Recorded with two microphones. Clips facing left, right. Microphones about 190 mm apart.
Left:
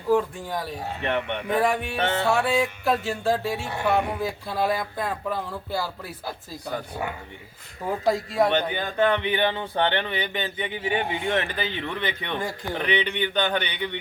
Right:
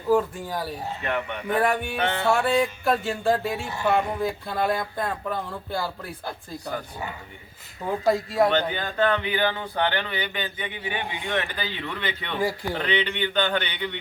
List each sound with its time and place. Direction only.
0.1 s speech: centre (ahead or behind)
1.0 s a man's voice: 25° left (ahead or behind)
1.5 s speech: centre (ahead or behind)
8.0 s speech: centre (ahead or behind)
8.4 s a man's voice: 15° left (ahead or behind)
12.4 s speech: 10° right (ahead or behind)
12.8 s speech: 15° left (ahead or behind)